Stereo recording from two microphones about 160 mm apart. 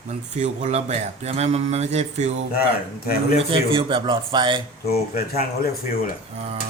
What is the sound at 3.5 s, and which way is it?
Speech, 35° right (ahead or behind).